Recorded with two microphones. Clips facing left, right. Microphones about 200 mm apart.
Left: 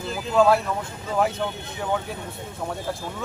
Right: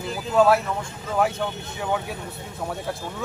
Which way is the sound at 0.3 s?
Centre (ahead or behind).